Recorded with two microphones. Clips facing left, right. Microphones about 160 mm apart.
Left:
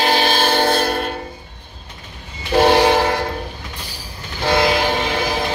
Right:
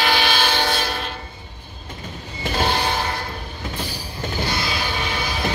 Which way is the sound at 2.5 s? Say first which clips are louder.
Left 10 dB; 75° left (ahead or behind).